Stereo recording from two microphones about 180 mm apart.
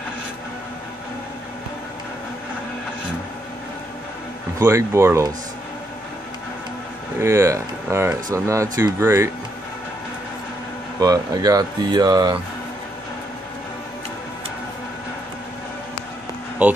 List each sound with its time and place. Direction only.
4.6 s speech: 15° right (ahead or behind)
7.2 s speech: 15° right (ahead or behind)
11.0 s speech: 20° right (ahead or behind)
16.6 s speech: 10° right (ahead or behind)